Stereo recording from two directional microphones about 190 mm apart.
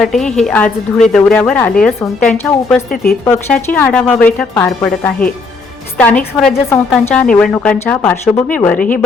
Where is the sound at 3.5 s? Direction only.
5° left (ahead or behind).